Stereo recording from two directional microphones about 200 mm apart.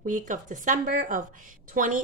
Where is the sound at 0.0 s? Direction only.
40° right (ahead or behind).